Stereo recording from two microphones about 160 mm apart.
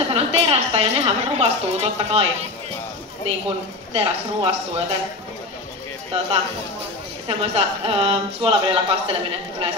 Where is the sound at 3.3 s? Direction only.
40° right (ahead or behind).